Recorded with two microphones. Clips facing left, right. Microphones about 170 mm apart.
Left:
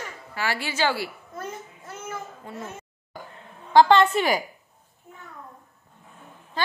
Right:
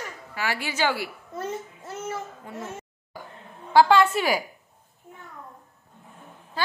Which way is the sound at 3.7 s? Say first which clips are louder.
Left 1 dB; 10° right (ahead or behind).